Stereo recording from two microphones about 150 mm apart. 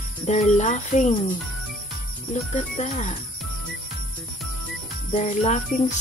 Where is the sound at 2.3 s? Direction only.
50° left (ahead or behind).